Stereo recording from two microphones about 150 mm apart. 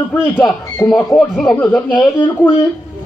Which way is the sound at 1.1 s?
Centre (ahead or behind).